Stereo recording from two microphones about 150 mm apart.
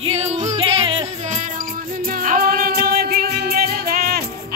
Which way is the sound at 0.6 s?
35° right (ahead or behind).